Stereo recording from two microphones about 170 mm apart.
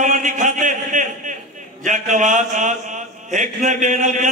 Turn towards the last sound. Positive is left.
turn(degrees=-45)  # may be behind; listen again after turning